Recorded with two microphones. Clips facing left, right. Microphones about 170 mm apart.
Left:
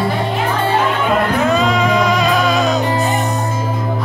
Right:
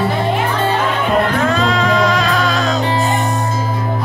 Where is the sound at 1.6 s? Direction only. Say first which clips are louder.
Even; 15° left (ahead or behind).